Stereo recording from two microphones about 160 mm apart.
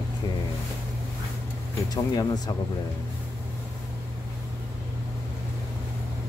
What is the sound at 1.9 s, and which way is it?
Speech, 25° left (ahead or behind).